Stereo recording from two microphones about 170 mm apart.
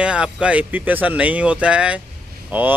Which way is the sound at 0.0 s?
5° right (ahead or behind).